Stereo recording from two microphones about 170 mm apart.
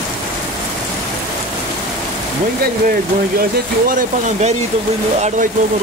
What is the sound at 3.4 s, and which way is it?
Speech, 55° right (ahead or behind).